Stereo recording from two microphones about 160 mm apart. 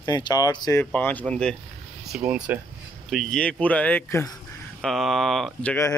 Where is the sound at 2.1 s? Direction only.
5° right (ahead or behind); by 4.3 s 15° left (ahead or behind).